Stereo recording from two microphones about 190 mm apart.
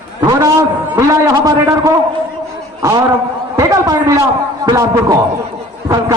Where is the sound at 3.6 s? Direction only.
20° right (ahead or behind).